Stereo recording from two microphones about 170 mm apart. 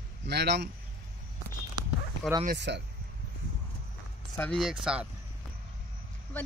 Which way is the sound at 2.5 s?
90° right.